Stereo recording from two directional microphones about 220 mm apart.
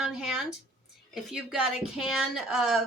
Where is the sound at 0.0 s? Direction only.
5° right (ahead or behind).